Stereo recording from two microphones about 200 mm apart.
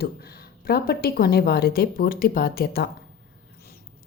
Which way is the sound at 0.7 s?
50° left (ahead or behind).